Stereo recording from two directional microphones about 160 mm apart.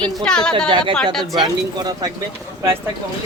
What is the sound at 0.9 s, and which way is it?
Speech, centre (ahead or behind).